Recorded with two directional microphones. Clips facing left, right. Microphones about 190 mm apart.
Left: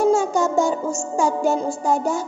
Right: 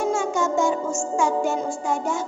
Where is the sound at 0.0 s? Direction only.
35° left (ahead or behind).